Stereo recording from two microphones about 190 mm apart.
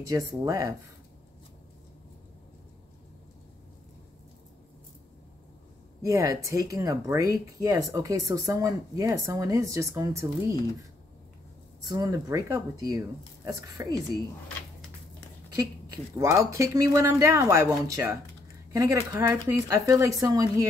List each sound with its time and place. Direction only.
0.1 s speech: 20° right (ahead or behind)
6.0 s speech: 15° right (ahead or behind)
11.8 s a woman's voice: 20° right (ahead or behind)
15.5 s speech: 15° right (ahead or behind)